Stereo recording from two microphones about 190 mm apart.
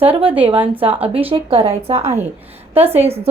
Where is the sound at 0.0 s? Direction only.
30° right (ahead or behind).